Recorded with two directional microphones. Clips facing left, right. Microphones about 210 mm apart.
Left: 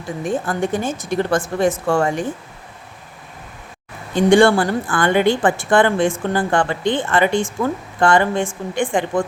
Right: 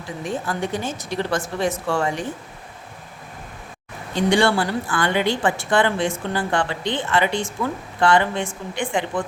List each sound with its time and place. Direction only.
0.3 s a woman's voice: 50° left (ahead or behind)
4.1 s a woman's voice: 50° left (ahead or behind)